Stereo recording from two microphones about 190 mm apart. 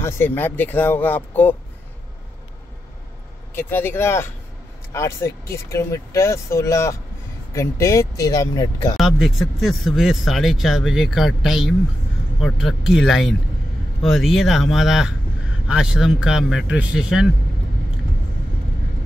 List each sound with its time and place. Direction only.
0.0 s speech: 10° left (ahead or behind)
3.5 s speech: 10° left (ahead or behind)
8.9 s speech: centre (ahead or behind)